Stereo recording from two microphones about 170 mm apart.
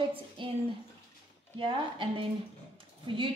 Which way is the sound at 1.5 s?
30° right (ahead or behind).